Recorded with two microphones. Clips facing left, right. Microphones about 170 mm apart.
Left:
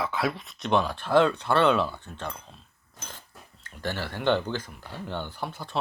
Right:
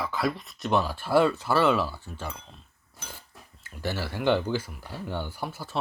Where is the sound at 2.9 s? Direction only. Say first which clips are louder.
Even; 10° right (ahead or behind).